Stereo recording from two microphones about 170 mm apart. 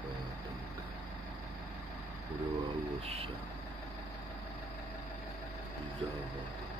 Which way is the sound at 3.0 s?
35° right (ahead or behind).